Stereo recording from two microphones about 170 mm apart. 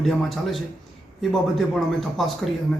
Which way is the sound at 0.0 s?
Centre (ahead or behind).